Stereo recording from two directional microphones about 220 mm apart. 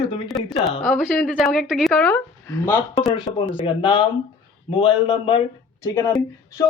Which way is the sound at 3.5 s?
25° left (ahead or behind).